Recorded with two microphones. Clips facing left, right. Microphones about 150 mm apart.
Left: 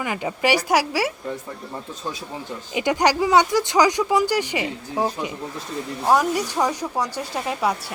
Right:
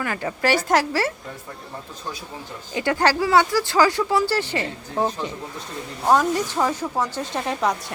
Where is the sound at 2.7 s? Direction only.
15° left (ahead or behind).